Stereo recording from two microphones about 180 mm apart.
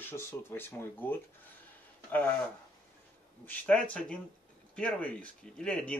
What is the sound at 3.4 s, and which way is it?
Speech, 10° left (ahead or behind).